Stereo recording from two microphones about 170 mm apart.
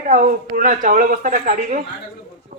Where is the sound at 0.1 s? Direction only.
50° right (ahead or behind).